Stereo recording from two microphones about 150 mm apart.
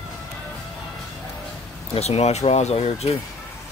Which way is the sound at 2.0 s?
45° left (ahead or behind).